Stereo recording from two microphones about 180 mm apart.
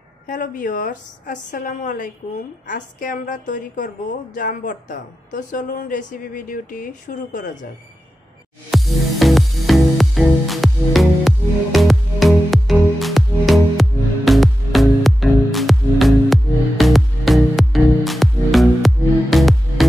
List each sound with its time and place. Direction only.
0.3 s a woman's voice: 50° left (ahead or behind)
8.7 s music: centre (ahead or behind)